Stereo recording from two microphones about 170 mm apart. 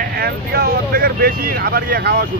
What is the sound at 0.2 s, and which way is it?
Speech, 65° right (ahead or behind).